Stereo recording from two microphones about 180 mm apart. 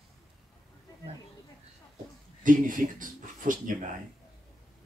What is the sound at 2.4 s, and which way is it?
Speech, 45° right (ahead or behind).